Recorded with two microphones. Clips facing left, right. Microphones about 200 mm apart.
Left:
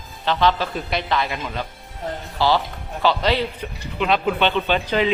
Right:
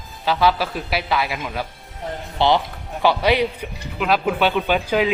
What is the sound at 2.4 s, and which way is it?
A man's voice, 20° right (ahead or behind).